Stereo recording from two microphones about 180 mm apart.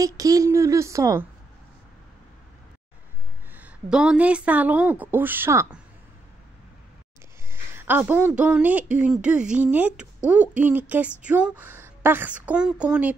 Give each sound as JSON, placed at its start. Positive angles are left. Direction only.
{"t": 0.0, "sound": "a woman's voice", "side_deg": -20}
{"t": 3.5, "sound": "a woman's voice", "side_deg": -5}
{"t": 7.4, "sound": "a woman's voice", "side_deg": -15}